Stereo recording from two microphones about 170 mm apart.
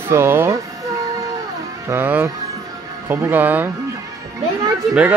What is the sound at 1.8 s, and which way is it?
Speech, 10° right (ahead or behind).